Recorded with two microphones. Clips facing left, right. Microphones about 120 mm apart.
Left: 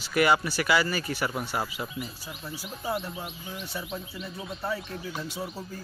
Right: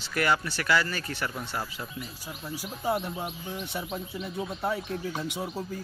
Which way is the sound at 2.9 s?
20° right (ahead or behind).